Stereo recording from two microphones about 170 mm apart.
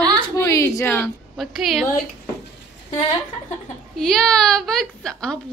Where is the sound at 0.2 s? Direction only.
20° left (ahead or behind).